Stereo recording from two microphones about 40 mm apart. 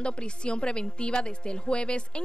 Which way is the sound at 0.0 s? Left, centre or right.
Left.